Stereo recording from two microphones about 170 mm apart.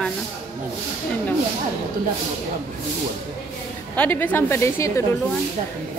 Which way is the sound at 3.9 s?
10° left (ahead or behind).